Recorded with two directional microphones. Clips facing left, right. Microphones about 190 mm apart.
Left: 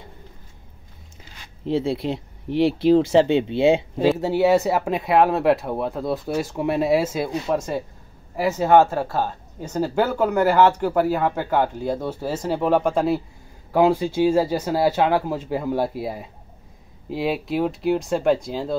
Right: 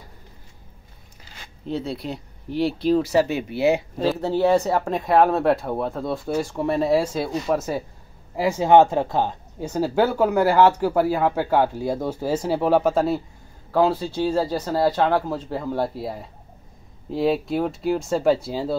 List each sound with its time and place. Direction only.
1.7 s speech: 25° left (ahead or behind)
4.2 s speech: 10° left (ahead or behind)
13.7 s speech: 15° left (ahead or behind); by 18.8 s 5° right (ahead or behind)